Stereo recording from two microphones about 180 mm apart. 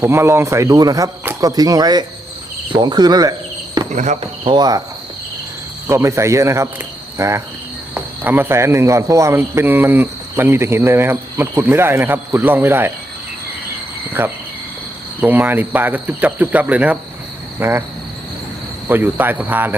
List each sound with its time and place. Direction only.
0.0 s speech: 15° right (ahead or behind)
3.9 s speech: 40° right (ahead or behind)
4.4 s speech: 20° right (ahead or behind)
5.9 s speech: 15° right (ahead or behind)
14.2 s speech: 10° right (ahead or behind)
18.9 s speech: 10° right (ahead or behind)